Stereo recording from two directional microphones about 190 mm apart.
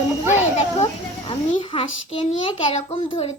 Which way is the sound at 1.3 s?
30° left (ahead or behind).